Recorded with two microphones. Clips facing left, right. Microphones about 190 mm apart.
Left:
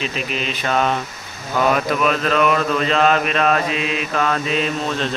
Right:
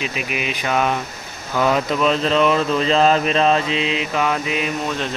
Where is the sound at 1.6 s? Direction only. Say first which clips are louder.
Right 1 dB; 25° right (ahead or behind).